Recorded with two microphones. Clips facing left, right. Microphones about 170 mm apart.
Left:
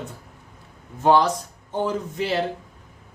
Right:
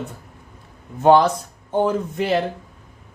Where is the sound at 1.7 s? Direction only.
55° right (ahead or behind).